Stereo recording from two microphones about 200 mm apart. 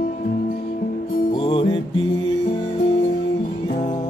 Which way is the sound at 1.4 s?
25° left (ahead or behind).